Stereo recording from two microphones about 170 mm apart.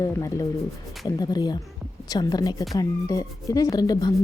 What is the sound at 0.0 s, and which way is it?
Speech, 15° left (ahead or behind).